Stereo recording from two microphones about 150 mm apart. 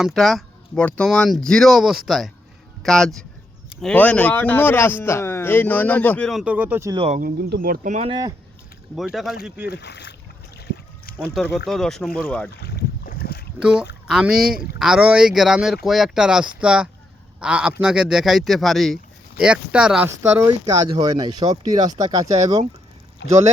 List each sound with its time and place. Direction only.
0.0 s a man's voice: centre (ahead or behind)
6.4 s speech: 10° right (ahead or behind)
7.2 s speech: 85° right
9.0 s speech: centre (ahead or behind)
9.6 s speech: 90° left
11.3 s speech: centre (ahead or behind)
12.6 s boat: 90° left
13.6 s speech: 5° right (ahead or behind)
20.5 s speech: 30° right (ahead or behind)